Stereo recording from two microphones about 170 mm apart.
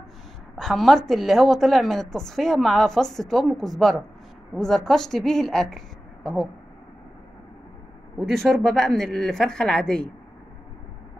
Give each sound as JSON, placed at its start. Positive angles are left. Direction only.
{"t": 0.6, "sound": "a woman's voice", "side_deg": 0}
{"t": 8.2, "sound": "a woman's voice", "side_deg": 0}